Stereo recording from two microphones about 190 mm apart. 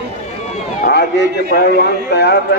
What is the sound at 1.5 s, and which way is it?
Speech, 55° left (ahead or behind).